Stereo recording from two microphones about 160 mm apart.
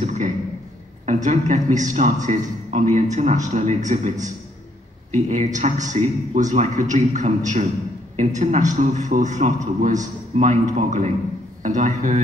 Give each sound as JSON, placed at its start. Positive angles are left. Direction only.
{"t": 0.0, "sound": "a sound", "side_deg": -45}
{"t": 1.0, "sound": "a man's voice", "side_deg": -45}
{"t": 5.1, "sound": "a man's voice", "side_deg": -45}